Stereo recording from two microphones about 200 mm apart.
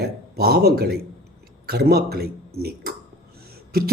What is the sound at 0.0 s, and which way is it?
Speech, 50° right (ahead or behind).